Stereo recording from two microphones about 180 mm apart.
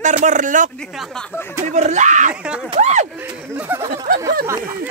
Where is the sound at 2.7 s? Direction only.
40° right (ahead or behind).